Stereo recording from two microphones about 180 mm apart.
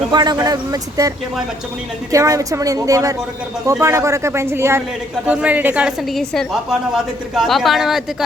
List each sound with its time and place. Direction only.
0.1 s speech: 25° right (ahead or behind)
2.1 s a woman's voice: 20° right (ahead or behind); by 8.0 s centre (ahead or behind)